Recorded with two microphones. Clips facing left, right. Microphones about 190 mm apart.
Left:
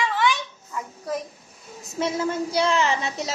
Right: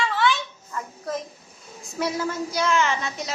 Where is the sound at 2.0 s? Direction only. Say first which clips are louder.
Left 2 dB; 25° left (ahead or behind).